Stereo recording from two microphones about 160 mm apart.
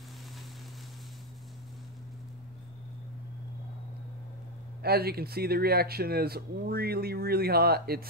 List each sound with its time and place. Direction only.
4.8 s speech: 75° right (ahead or behind)